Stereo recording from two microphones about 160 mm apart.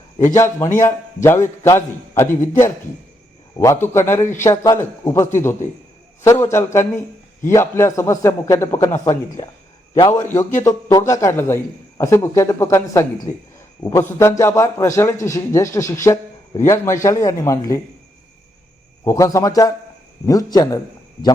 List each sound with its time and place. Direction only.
0.3 s a man's voice: 15° left (ahead or behind)
3.6 s a man's voice: 15° left (ahead or behind)
19.0 s a man's voice: 20° left (ahead or behind)